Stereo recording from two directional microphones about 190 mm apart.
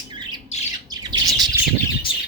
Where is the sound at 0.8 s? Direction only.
20° right (ahead or behind).